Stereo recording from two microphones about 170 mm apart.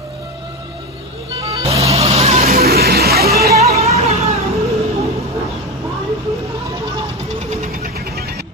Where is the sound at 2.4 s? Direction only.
60° right (ahead or behind).